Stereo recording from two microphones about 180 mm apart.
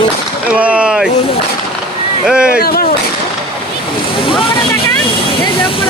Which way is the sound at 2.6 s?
55° left (ahead or behind).